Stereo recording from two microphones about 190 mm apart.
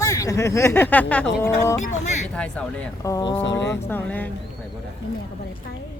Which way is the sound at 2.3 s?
5° left (ahead or behind).